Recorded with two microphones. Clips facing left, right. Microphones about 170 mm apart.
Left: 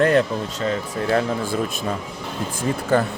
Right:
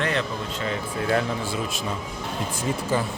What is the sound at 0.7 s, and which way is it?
Speech, 35° left (ahead or behind).